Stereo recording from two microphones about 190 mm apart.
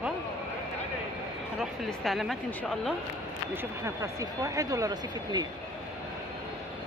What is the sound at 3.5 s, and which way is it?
Speech, 15° right (ahead or behind).